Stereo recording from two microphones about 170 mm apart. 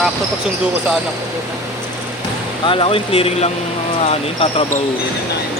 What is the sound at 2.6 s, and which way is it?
Speech, 30° left (ahead or behind).